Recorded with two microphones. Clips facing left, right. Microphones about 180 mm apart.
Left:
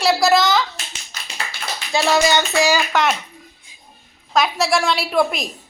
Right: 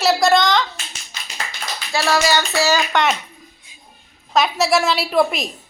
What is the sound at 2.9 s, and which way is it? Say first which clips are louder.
Speech: even; centre (ahead or behind).